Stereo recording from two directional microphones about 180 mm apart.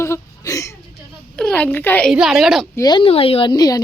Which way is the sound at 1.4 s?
5° left (ahead or behind).